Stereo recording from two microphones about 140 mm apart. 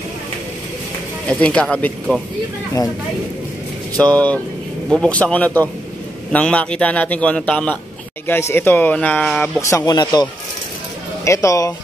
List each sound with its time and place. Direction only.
1.3 s a man's voice: 5° left (ahead or behind)
4.0 s a man's voice: 10° left (ahead or behind)
9.6 s speech: 20° left (ahead or behind)
11.2 s speech: 20° left (ahead or behind)